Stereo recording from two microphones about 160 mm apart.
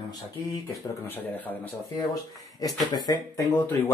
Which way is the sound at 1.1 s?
10° left (ahead or behind).